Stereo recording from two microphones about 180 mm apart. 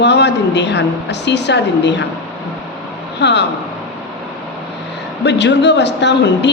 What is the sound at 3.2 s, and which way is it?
Speech, 70° left (ahead or behind).